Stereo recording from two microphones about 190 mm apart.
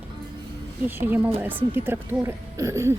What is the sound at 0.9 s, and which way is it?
Speech, 10° right (ahead or behind).